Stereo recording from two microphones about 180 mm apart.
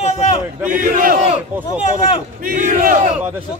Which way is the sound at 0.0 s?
35° left (ahead or behind).